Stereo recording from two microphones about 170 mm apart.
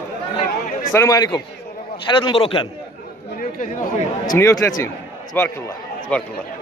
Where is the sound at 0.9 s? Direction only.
20° left (ahead or behind).